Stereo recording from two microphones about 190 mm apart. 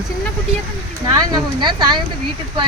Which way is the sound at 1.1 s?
20° right (ahead or behind).